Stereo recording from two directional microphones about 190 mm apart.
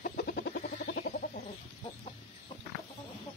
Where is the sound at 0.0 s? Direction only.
50° left (ahead or behind).